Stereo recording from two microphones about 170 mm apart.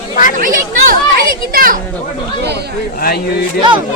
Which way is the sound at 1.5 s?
60° right (ahead or behind).